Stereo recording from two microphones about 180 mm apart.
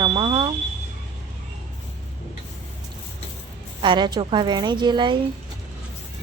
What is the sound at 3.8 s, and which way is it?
Speech, 25° right (ahead or behind).